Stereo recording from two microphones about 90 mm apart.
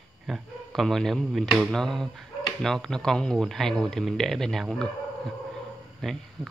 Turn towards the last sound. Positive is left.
turn(degrees=5)  # may be behind; listen again after turning